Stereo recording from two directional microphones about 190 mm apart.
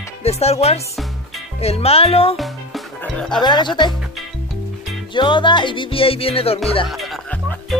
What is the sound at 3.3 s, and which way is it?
Music, 25° left (ahead or behind).